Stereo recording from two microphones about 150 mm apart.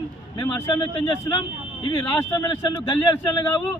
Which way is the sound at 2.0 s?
20° left (ahead or behind).